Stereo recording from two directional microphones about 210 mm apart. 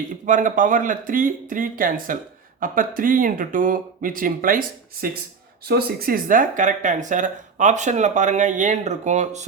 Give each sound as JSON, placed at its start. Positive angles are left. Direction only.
{"t": 0.3, "sound": "speech", "side_deg": -40}